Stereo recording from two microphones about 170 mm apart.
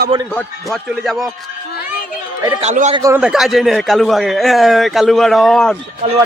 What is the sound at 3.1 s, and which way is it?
A man's voice, 5° right (ahead or behind).